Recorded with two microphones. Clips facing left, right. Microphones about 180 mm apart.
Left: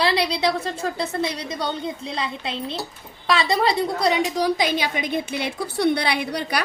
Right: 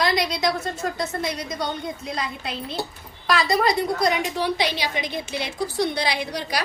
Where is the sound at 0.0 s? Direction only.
30° left (ahead or behind).